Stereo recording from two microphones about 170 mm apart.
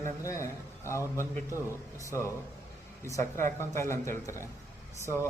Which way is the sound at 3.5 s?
15° left (ahead or behind).